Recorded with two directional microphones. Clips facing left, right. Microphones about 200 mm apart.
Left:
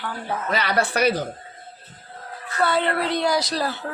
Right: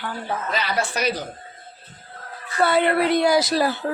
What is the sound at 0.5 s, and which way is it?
Speech, 60° left (ahead or behind).